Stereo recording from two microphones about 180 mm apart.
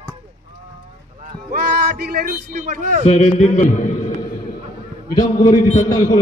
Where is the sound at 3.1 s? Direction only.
40° left (ahead or behind).